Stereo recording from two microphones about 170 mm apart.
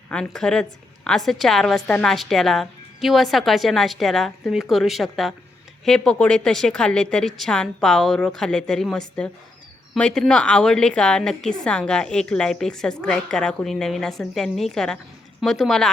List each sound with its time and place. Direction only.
0.1 s a woman's voice: 5° left (ahead or behind)